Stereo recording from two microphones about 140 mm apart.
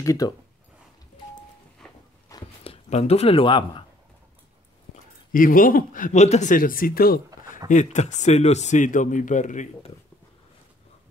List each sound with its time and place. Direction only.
0.0 s speech: 25° left (ahead or behind)
1.8 s a sound: 5° left (ahead or behind)
2.3 s a sound: 25° left (ahead or behind)
2.6 s speech: 45° left (ahead or behind)
5.3 s a man's voice: 75° left (ahead or behind)
6.2 s speech: 50° left (ahead or behind)
6.5 s speech: 90° left
7.4 s speech: 65° left (ahead or behind)